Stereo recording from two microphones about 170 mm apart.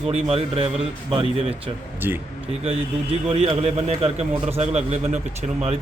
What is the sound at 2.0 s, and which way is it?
Speech, 10° right (ahead or behind).